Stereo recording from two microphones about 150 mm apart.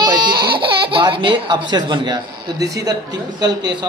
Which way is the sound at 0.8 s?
35° right (ahead or behind).